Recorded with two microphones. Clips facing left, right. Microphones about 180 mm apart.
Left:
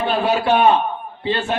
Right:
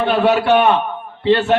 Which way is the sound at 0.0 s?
65° right (ahead or behind).